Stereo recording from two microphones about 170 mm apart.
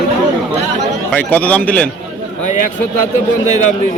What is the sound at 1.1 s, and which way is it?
Speech, 10° left (ahead or behind).